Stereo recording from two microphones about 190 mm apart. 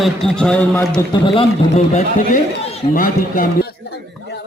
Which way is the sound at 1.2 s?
30° left (ahead or behind).